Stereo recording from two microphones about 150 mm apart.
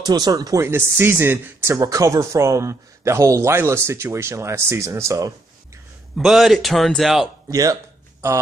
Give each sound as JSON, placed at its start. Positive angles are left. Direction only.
{"t": 0.0, "sound": "speech", "side_deg": -25}
{"t": 6.1, "sound": "a man's voice", "side_deg": 0}
{"t": 7.4, "sound": "speech", "side_deg": -25}